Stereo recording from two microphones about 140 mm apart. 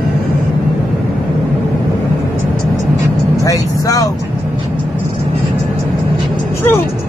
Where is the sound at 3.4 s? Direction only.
25° left (ahead or behind).